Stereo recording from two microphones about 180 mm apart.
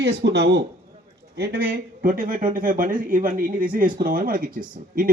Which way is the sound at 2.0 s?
50° right (ahead or behind).